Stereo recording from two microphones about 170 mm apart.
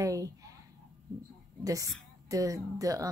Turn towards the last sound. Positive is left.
turn(degrees=-20)  # may be behind; listen again after turning